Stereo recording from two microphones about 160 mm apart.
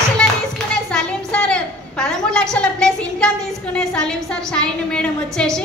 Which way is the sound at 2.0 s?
5° left (ahead or behind).